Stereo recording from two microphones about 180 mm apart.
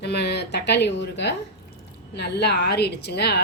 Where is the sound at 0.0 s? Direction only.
65° left (ahead or behind).